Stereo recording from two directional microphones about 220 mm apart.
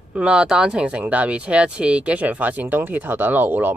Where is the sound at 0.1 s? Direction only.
5° right (ahead or behind).